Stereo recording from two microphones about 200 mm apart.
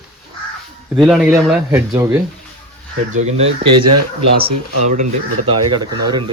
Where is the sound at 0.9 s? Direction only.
Centre (ahead or behind).